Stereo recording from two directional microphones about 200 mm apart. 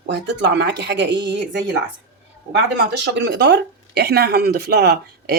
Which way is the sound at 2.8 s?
60° right (ahead or behind).